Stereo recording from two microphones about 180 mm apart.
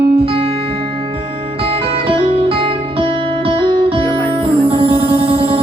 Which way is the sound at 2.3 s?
30° right (ahead or behind).